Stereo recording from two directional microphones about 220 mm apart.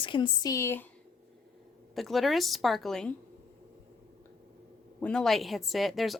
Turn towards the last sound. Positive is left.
turn(degrees=0)  # may be behind; listen again after turning